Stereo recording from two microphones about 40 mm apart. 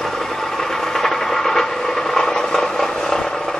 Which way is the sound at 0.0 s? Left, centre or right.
Centre.